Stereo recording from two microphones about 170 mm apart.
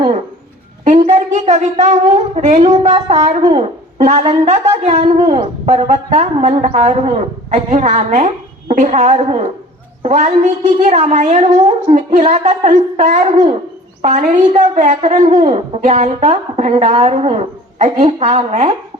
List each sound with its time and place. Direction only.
0.9 s a man's voice: 40° right (ahead or behind)